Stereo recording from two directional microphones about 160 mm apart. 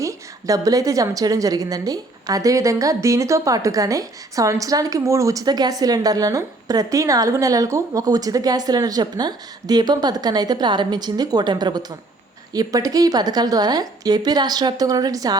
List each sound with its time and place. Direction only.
0.0 s a woman's voice: 20° right (ahead or behind)